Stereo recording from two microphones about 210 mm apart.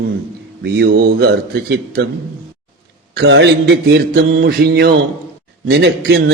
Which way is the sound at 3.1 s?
60° right (ahead or behind).